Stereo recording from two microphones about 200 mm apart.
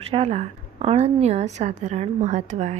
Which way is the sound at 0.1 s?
30° right (ahead or behind).